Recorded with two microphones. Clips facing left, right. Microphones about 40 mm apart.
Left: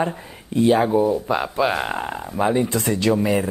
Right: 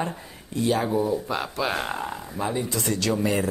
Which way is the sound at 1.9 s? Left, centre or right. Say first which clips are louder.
Left 4 dB; left.